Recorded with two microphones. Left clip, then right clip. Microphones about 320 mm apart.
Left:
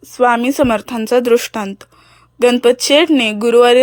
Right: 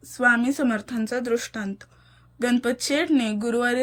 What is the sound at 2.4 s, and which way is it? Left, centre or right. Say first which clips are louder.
Speech: left 13 dB; left.